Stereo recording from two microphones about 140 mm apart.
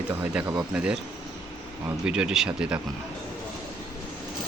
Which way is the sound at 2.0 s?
5° right (ahead or behind).